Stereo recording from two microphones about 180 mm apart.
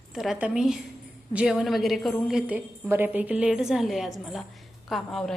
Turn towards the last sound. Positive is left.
turn(degrees=0)  # may be behind; listen again after turning